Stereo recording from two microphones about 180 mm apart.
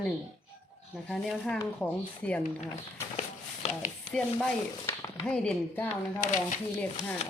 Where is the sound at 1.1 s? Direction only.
Centre (ahead or behind).